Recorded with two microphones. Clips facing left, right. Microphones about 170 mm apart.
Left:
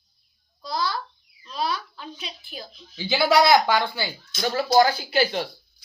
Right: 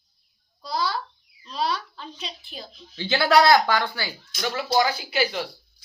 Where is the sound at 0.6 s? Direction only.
Centre (ahead or behind).